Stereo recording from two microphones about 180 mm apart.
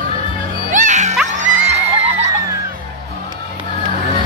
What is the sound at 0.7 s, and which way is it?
Music, 40° right (ahead or behind).